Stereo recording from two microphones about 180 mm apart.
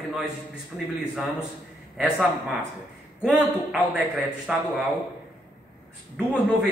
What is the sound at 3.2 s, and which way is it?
A man's voice, 5° right (ahead or behind).